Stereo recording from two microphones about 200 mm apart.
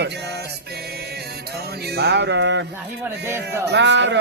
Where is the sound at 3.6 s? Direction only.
65° right (ahead or behind).